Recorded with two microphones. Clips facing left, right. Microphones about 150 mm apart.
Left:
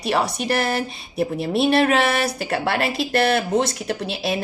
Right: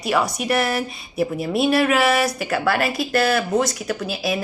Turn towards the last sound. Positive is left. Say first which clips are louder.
# even
turn(degrees=30)  # may be behind; listen again after turning